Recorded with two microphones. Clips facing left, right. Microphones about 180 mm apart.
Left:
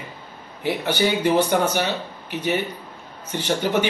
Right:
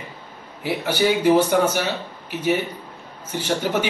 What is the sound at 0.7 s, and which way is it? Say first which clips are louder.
A man's voice: right 1 dB; 5° right (ahead or behind).